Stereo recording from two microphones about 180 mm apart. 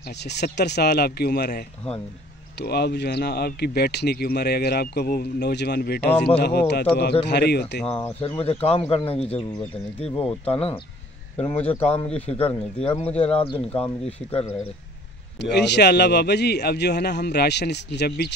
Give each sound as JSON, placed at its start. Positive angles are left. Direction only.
{"t": 0.2, "sound": "a man's voice", "side_deg": 70}
{"t": 2.6, "sound": "speech", "side_deg": 65}
{"t": 6.1, "sound": "speech", "side_deg": 5}
{"t": 6.7, "sound": "a man's voice", "side_deg": 65}
{"t": 8.2, "sound": "speech", "side_deg": 30}
{"t": 11.5, "sound": "a man's voice", "side_deg": 10}
{"t": 11.8, "sound": "speech", "side_deg": 35}
{"t": 15.4, "sound": "a man's voice", "side_deg": 70}